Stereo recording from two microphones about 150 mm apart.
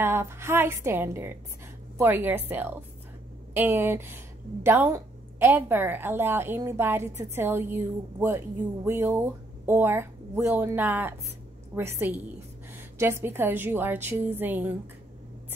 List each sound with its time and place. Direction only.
0.0 s a woman's voice: 15° right (ahead or behind)